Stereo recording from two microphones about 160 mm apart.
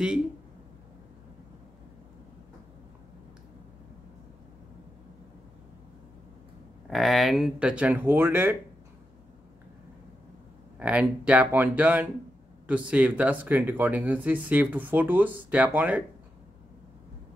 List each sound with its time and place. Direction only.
6.9 s speech: centre (ahead or behind)
10.8 s speech: 10° right (ahead or behind)